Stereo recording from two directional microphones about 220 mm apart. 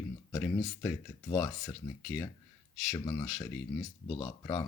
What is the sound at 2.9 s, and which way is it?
Speech, 15° left (ahead or behind).